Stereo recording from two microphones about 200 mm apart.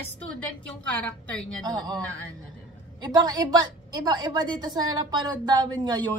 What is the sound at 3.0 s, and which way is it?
Speech, 20° right (ahead or behind).